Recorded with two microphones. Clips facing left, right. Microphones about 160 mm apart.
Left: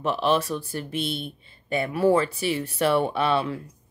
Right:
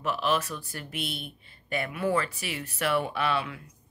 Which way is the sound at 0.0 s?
30° left (ahead or behind).